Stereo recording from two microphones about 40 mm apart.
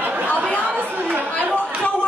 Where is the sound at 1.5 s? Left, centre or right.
Left.